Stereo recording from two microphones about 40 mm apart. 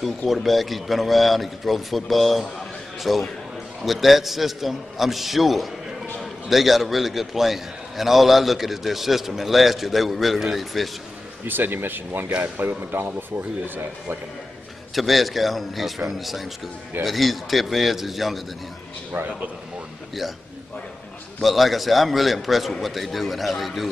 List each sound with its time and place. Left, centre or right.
0.3 s a man's voice: centre
11.4 s speech: right
12.5 s speech: right
15.0 s a man's voice: centre
19.1 s speech: right
21.4 s a man's voice: centre